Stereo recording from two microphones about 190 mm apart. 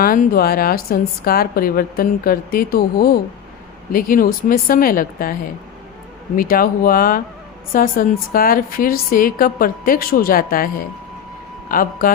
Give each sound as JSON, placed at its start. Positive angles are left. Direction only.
{"t": 0.0, "sound": "a woman's voice", "side_deg": 50}
{"t": 6.3, "sound": "a woman's voice", "side_deg": 50}
{"t": 11.7, "sound": "a woman's voice", "side_deg": 50}